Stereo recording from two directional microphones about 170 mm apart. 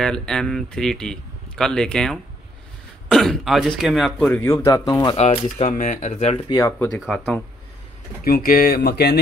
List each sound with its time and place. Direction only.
0.0 s speech: 5° left (ahead or behind); by 5.1 s 20° left (ahead or behind)
5.1 s speech: 35° left (ahead or behind)
6.5 s speech: 20° left (ahead or behind)
7.0 s speech: centre (ahead or behind)
8.2 s speech: 60° left (ahead or behind)